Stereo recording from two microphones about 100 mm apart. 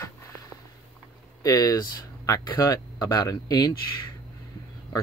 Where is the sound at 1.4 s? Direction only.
40° left (ahead or behind).